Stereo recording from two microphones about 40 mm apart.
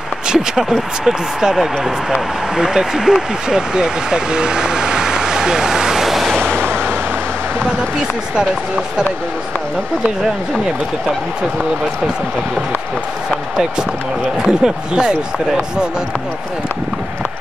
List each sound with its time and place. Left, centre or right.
0.3 s speech: centre
14.4 s speech: centre